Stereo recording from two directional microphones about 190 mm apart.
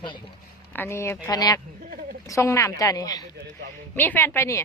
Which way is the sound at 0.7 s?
10° left (ahead or behind).